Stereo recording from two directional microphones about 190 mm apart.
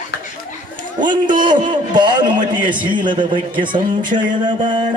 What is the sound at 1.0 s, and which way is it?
Speech, 25° right (ahead or behind).